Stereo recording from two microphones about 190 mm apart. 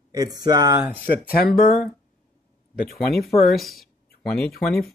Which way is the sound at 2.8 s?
50° left (ahead or behind).